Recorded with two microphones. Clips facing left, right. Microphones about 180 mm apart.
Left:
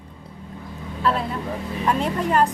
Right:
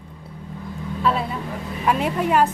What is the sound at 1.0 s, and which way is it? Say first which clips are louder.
Speech: even; centre (ahead or behind).